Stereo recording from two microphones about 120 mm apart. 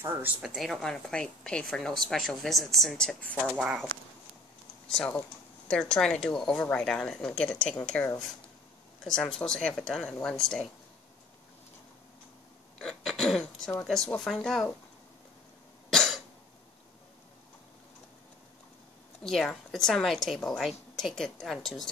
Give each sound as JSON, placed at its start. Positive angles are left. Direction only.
{"t": 0.0, "sound": "a woman's voice", "side_deg": -15}
{"t": 0.4, "sound": "a woman's voice", "side_deg": 0}
{"t": 4.8, "sound": "a woman's voice", "side_deg": 10}
{"t": 12.8, "sound": "a sound", "side_deg": 0}
{"t": 13.8, "sound": "a woman's voice", "side_deg": 5}
{"t": 15.9, "sound": "cough", "side_deg": 5}
{"t": 19.2, "sound": "a woman's voice", "side_deg": 5}